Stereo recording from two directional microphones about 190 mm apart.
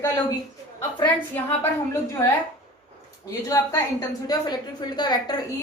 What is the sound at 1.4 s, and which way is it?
Speech, 10° left (ahead or behind).